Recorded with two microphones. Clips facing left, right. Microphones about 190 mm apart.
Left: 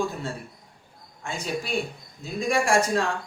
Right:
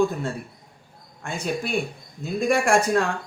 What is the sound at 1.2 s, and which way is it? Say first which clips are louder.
Speech: right 2 dB; 55° right (ahead or behind).